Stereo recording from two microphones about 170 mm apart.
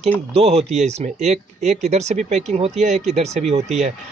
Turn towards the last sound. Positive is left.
turn(degrees=-40)  # may be behind; listen again after turning